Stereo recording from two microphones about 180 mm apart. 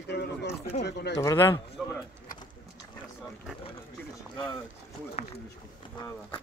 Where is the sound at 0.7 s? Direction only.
65° left (ahead or behind).